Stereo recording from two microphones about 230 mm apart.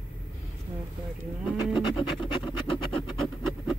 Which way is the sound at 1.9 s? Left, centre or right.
Left.